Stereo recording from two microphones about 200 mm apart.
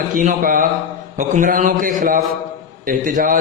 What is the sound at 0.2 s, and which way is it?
A man's voice, 40° right (ahead or behind).